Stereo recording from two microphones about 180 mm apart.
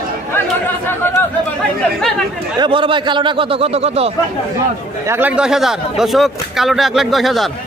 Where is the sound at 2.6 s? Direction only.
30° right (ahead or behind).